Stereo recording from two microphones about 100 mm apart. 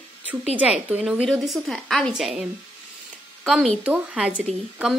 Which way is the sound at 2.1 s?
5° right (ahead or behind).